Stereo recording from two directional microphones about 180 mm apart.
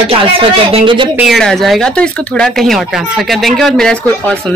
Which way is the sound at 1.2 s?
Centre (ahead or behind).